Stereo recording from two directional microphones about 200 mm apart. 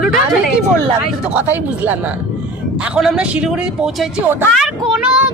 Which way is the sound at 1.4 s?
10° right (ahead or behind).